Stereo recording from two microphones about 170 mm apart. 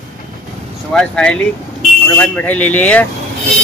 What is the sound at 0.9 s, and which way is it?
Speech, 5° left (ahead or behind).